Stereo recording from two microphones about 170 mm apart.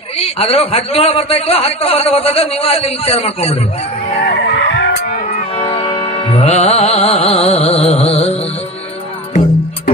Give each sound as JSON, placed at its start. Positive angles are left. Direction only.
{"t": 0.2, "sound": "a man's voice", "side_deg": 35}
{"t": 4.2, "sound": "music", "side_deg": 85}
{"t": 5.6, "sound": "music", "side_deg": 30}